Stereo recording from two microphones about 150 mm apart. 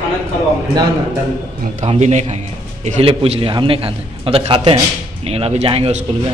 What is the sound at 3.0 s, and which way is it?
A man's voice, 40° right (ahead or behind).